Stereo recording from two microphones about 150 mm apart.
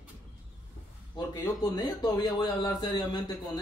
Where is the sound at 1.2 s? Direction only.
25° left (ahead or behind).